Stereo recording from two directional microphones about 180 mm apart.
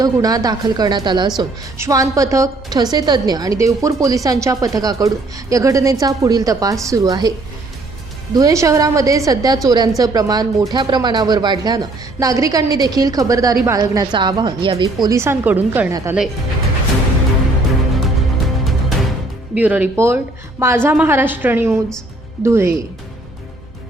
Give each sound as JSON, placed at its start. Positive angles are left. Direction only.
{"t": 0.0, "sound": "a woman's voice", "side_deg": -20}
{"t": 17.7, "sound": "music", "side_deg": 0}
{"t": 19.5, "sound": "a woman's voice", "side_deg": -10}